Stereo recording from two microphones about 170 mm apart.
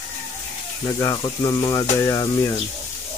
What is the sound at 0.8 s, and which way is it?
Speech, 20° left (ahead or behind).